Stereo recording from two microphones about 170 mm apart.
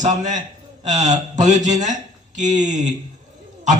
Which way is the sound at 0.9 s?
45° right (ahead or behind).